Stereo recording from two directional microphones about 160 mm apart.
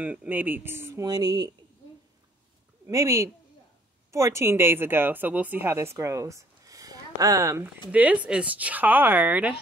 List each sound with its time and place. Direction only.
0.0 s speech: 10° right (ahead or behind); by 1.5 s 25° right (ahead or behind)
2.9 s a woman's voice: 20° right (ahead or behind)
7.9 s speech: 10° right (ahead or behind)